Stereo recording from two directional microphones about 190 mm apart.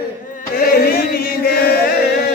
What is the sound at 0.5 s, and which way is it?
Chant, 55° left (ahead or behind).